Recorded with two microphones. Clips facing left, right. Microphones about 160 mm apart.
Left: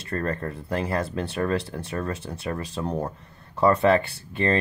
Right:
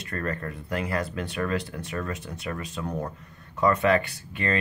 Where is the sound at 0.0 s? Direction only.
30° left (ahead or behind).